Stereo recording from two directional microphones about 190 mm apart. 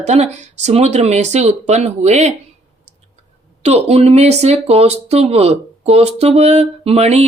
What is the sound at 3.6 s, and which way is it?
Speech, 35° right (ahead or behind).